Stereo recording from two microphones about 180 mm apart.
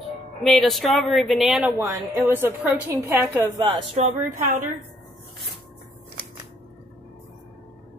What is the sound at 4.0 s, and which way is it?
Speech, 40° right (ahead or behind).